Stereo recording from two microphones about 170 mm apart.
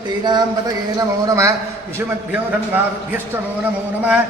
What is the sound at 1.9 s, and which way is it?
A man's voice, 10° right (ahead or behind).